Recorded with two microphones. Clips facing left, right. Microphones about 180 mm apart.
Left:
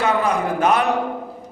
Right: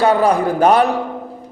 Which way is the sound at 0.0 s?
35° right (ahead or behind).